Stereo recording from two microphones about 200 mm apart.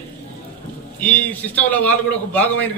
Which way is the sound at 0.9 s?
10° left (ahead or behind).